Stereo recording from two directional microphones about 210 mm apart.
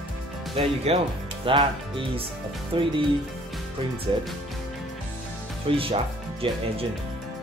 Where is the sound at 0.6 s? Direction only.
30° right (ahead or behind).